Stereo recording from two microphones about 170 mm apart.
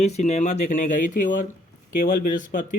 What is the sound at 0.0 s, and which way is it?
Speech, 40° left (ahead or behind).